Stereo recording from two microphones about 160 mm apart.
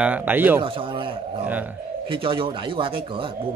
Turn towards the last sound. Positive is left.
turn(degrees=-35)  # may be behind; listen again after turning